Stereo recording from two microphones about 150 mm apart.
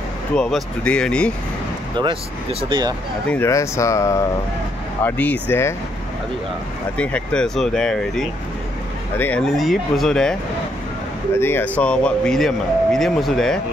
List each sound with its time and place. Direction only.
0.4 s speech: 5° left (ahead or behind)
3.3 s speech: 20° left (ahead or behind)
7.0 s speech: 10° left (ahead or behind)
11.3 s speech: 15° left (ahead or behind)